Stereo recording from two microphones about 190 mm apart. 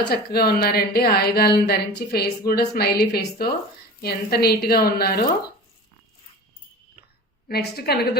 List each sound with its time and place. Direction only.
0.1 s a woman's voice: 55° left (ahead or behind)
7.4 s a woman's voice: 55° left (ahead or behind)